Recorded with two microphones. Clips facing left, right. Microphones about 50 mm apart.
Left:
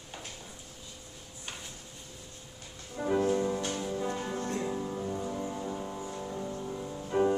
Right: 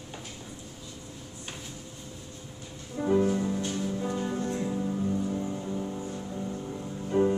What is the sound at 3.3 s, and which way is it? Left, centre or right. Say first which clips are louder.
Music: even; centre.